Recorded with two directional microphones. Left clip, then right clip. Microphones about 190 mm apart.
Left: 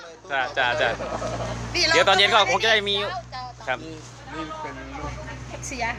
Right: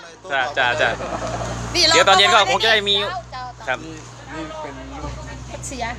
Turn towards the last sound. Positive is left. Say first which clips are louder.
# right 1 dB
turn(degrees=-5)  # may be behind; listen again after turning